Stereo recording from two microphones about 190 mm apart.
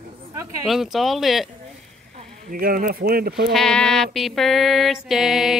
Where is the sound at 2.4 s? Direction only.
50° right (ahead or behind).